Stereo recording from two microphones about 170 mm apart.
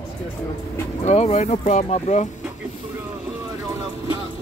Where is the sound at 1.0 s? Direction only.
40° left (ahead or behind).